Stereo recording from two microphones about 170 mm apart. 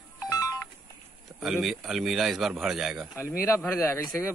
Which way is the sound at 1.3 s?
5° right (ahead or behind).